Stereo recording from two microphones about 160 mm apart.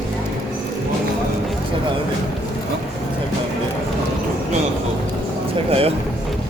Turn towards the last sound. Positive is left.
turn(degrees=-35)  # may be behind; listen again after turning